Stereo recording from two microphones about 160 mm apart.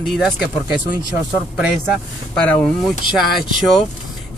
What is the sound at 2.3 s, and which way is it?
Speech, 10° left (ahead or behind).